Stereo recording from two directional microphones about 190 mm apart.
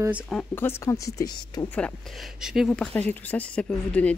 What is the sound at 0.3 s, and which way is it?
Speech, 10° left (ahead or behind).